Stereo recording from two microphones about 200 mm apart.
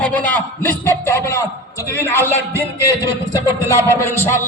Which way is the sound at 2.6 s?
15° right (ahead or behind).